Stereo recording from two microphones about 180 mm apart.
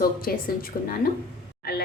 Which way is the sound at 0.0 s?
55° left (ahead or behind).